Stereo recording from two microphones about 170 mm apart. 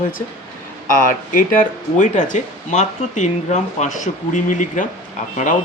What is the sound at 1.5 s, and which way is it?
Speech, 45° left (ahead or behind).